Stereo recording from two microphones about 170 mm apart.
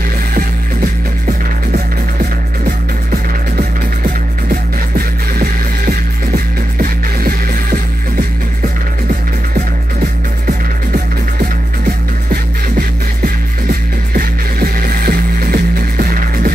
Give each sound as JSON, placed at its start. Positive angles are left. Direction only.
{"t": 4.9, "sound": "music", "side_deg": -60}
{"t": 13.7, "sound": "music", "side_deg": -65}